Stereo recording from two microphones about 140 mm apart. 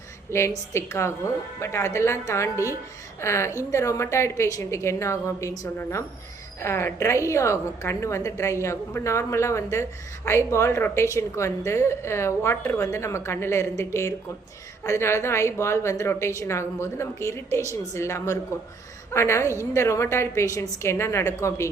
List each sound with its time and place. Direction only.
0.3 s a woman's voice: 20° left (ahead or behind)